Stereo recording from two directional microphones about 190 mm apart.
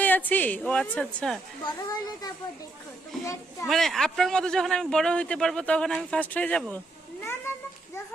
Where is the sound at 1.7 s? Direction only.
20° left (ahead or behind).